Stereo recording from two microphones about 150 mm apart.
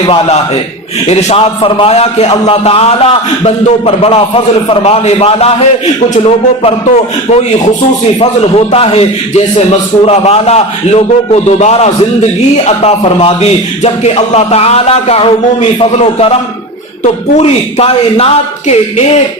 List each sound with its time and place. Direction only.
1.0 s a man's voice: 40° left (ahead or behind)